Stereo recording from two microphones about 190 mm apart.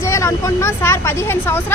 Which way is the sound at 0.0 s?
15° left (ahead or behind).